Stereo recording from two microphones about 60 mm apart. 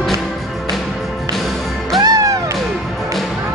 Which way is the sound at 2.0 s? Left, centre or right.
Right.